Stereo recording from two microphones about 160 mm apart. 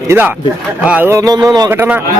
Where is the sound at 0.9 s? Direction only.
10° right (ahead or behind).